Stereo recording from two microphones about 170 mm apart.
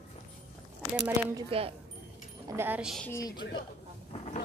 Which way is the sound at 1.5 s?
35° right (ahead or behind).